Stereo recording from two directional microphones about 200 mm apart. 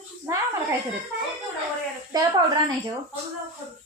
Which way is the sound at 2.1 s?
20° right (ahead or behind).